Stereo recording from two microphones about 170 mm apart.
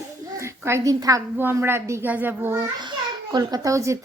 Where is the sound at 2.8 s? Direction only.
25° right (ahead or behind).